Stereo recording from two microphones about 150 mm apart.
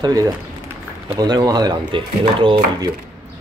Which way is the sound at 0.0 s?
25° right (ahead or behind).